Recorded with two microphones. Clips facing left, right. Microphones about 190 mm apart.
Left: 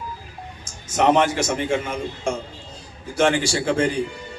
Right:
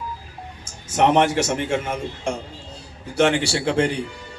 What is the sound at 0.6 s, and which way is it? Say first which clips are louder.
A man's voice: even; 60° right (ahead or behind).